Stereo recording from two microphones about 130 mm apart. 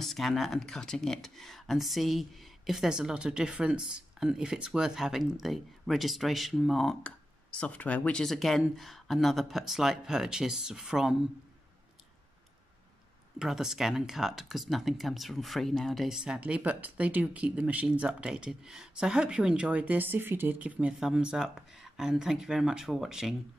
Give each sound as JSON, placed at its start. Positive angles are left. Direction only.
{"t": 0.0, "sound": "speech", "side_deg": 0}
{"t": 13.4, "sound": "speech", "side_deg": -5}